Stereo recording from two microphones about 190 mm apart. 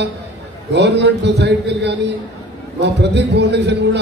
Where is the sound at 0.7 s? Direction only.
65° right (ahead or behind).